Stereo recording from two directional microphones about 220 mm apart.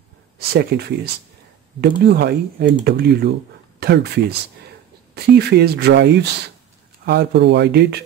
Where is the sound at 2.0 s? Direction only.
45° right (ahead or behind).